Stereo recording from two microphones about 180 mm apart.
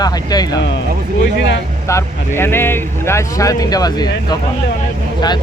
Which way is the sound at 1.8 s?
15° left (ahead or behind).